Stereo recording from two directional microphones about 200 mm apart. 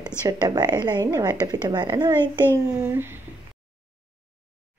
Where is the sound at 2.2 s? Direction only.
10° left (ahead or behind).